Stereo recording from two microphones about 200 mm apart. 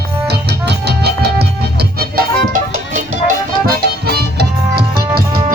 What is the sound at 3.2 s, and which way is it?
Music, 50° right (ahead or behind).